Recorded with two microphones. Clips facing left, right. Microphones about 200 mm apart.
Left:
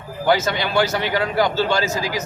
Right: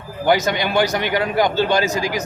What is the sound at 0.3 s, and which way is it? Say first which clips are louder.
A man's voice: right 2 dB; 15° right (ahead or behind).